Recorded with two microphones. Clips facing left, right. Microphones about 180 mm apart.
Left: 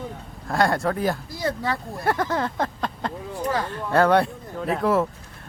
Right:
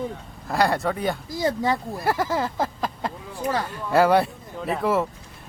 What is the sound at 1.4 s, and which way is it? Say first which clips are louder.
Speech: right 4 dB; 20° right (ahead or behind).